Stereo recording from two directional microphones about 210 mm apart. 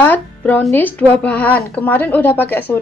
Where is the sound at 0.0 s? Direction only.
10° left (ahead or behind).